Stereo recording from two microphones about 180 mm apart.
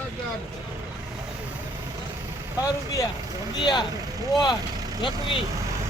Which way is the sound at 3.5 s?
25° left (ahead or behind).